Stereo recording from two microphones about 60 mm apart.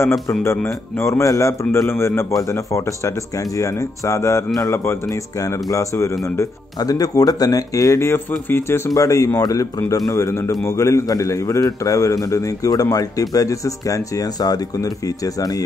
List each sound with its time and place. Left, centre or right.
0.3 s a man's voice: left
1.2 s a man's voice: left
2.3 s speech: left
4.6 s a man's voice: left
5.7 s speech: left
6.9 s speech: left
8.5 s a man's voice: left
8.9 s speech: left
9.8 s speech: left
10.1 s a man's voice: left